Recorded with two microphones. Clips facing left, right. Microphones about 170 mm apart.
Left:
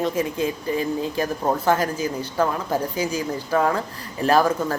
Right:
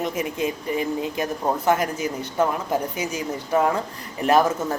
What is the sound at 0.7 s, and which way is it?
Speech, 20° right (ahead or behind).